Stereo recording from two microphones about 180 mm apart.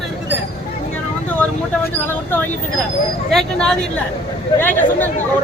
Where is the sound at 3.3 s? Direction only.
5° left (ahead or behind).